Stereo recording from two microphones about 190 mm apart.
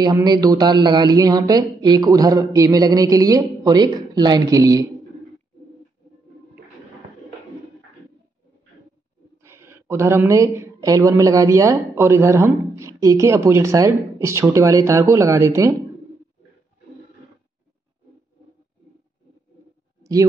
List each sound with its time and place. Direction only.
0.0 s a man's voice: 20° right (ahead or behind)
9.4 s speech: 15° right (ahead or behind)
20.0 s a sound: 15° right (ahead or behind)